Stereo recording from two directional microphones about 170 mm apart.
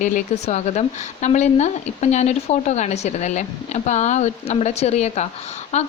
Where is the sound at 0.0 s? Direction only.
45° left (ahead or behind).